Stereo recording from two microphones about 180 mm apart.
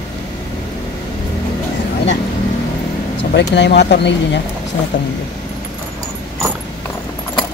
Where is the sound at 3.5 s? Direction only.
75° left (ahead or behind).